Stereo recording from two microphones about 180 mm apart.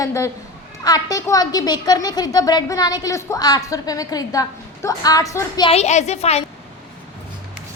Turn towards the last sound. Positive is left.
turn(degrees=35)  # may be behind; listen again after turning